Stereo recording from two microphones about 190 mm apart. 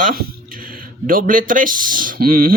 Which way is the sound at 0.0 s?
50° right (ahead or behind).